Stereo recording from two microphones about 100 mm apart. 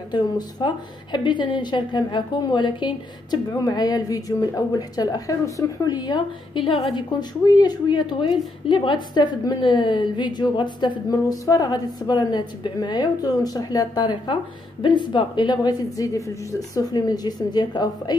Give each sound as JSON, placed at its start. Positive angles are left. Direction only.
{"t": 0.1, "sound": "a woman's voice", "side_deg": 45}
{"t": 6.9, "sound": "a woman's voice", "side_deg": 45}